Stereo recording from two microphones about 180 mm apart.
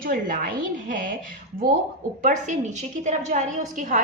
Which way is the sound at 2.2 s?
45° right (ahead or behind).